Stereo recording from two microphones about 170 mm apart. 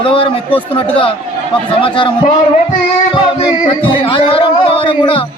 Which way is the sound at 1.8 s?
30° left (ahead or behind).